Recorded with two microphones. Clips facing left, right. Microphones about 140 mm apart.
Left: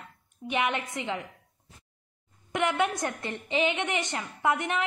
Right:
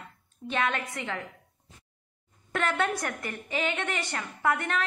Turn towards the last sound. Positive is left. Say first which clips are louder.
# left 1 dB
turn(degrees=20)  # may be behind; listen again after turning